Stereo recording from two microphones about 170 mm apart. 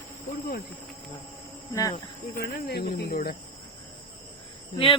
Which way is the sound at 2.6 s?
70° left (ahead or behind).